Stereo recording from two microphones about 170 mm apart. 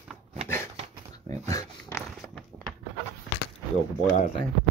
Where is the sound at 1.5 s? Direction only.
20° left (ahead or behind).